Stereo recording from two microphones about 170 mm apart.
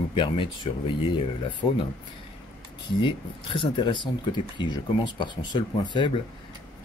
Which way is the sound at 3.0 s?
30° left (ahead or behind).